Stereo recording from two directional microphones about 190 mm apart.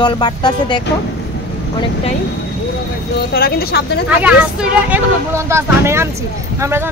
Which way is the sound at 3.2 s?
55° left (ahead or behind).